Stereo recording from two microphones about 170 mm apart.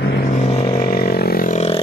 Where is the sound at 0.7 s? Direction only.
55° left (ahead or behind).